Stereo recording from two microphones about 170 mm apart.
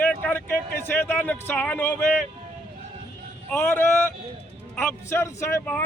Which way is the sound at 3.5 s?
15° left (ahead or behind).